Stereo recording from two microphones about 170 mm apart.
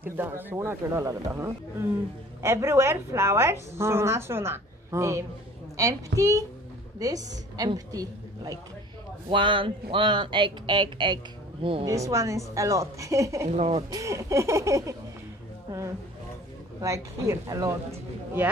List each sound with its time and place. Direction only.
0.0 s a woman's voice: 15° right (ahead or behind)
13.6 s speech: 35° right (ahead or behind)
13.8 s a woman's voice: 20° right (ahead or behind)
16.8 s a woman's voice: 20° right (ahead or behind)